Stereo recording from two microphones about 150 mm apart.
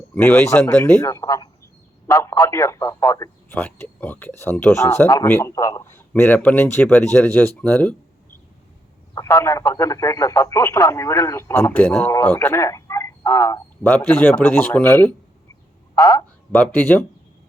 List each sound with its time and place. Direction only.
0.1 s speech: 15° left (ahead or behind)
1.0 s a man's voice: 20° left (ahead or behind)
9.1 s speech: 20° left (ahead or behind)
13.8 s speech: 10° left (ahead or behind)
16.0 s a man's voice: 20° left (ahead or behind)
16.5 s speech: 10° left (ahead or behind)